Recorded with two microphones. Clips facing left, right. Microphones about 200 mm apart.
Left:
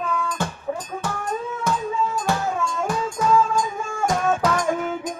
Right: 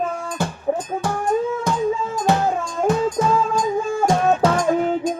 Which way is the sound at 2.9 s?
25° right (ahead or behind).